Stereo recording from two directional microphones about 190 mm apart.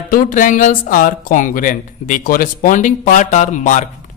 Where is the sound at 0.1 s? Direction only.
40° left (ahead or behind).